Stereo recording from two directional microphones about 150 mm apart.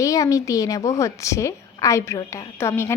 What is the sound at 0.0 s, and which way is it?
A woman's voice, 20° left (ahead or behind).